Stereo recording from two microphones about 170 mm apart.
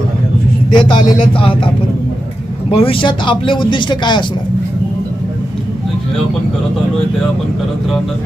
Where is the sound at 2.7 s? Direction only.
30° left (ahead or behind).